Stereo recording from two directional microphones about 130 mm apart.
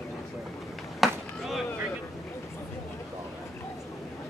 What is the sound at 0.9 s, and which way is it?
Chop, centre (ahead or behind).